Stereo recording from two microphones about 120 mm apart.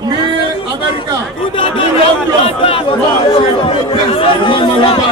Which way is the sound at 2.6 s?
50° left (ahead or behind).